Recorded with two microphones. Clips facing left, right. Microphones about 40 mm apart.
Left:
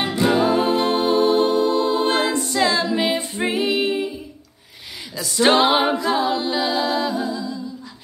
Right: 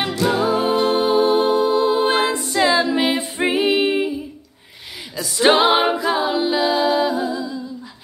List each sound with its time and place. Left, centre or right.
0.3 s music: centre
3.5 s female singing: right
5.1 s a capella: centre